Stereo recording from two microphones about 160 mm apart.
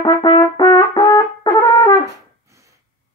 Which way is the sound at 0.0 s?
25° left (ahead or behind).